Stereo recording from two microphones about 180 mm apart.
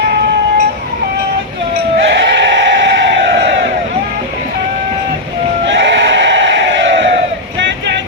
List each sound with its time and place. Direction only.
2.1 s crowd: 80° right
5.6 s bleat: 90° right